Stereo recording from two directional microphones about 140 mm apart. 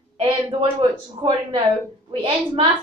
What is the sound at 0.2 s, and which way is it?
A woman's voice, 40° right (ahead or behind).